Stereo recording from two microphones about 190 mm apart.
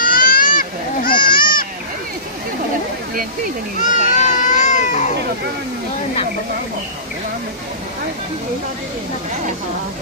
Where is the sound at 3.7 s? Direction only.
40° left (ahead or behind).